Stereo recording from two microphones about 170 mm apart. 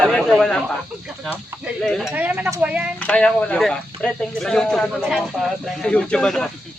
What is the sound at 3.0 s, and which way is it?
Speech, 5° left (ahead or behind).